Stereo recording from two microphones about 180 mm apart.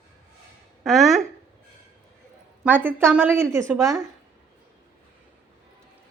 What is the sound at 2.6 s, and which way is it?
A woman's voice, 10° right (ahead or behind).